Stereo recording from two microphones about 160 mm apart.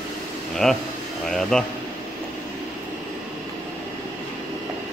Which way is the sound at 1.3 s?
5° left (ahead or behind).